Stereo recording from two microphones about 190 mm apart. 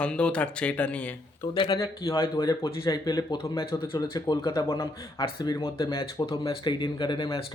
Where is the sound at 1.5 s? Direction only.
20° left (ahead or behind).